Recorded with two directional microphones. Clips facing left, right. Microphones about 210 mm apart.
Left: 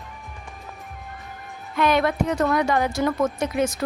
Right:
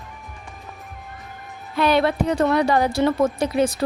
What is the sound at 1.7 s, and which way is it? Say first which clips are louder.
A woman's voice: right 2 dB; 30° right (ahead or behind).